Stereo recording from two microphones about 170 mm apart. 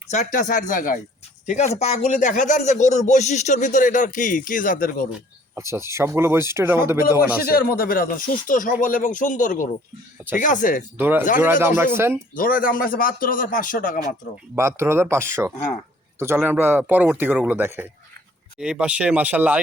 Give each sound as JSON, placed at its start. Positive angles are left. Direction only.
{"t": 0.1, "sound": "speech", "side_deg": 45}
{"t": 1.5, "sound": "speech", "side_deg": 40}
{"t": 5.5, "sound": "speech", "side_deg": -15}
{"t": 7.4, "sound": "speech", "side_deg": 60}
{"t": 10.9, "sound": "speech", "side_deg": -10}
{"t": 12.3, "sound": "speech", "side_deg": 55}
{"t": 14.5, "sound": "speech", "side_deg": -15}